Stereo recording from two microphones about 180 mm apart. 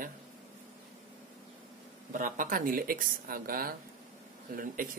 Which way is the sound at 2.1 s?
50° right (ahead or behind).